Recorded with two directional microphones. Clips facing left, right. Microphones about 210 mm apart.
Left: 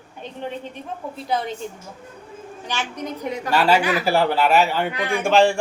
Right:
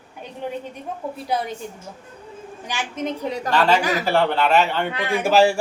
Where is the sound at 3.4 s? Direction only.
10° left (ahead or behind).